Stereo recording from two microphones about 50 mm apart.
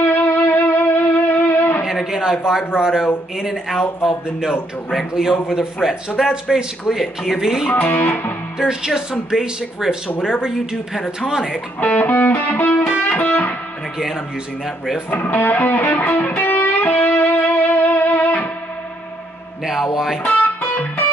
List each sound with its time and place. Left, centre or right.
0.0 s music: left
2.0 s a man's voice: centre
7.7 s music: left
8.5 s a man's voice: centre
11.8 s music: left
13.9 s a man's voice: centre
15.0 s music: left
19.6 s speech: centre